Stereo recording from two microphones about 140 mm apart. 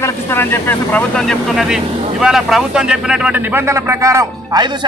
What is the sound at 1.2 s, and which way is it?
Speech, centre (ahead or behind).